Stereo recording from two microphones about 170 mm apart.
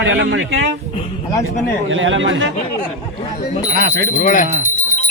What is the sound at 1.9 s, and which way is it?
Speech, 90° right.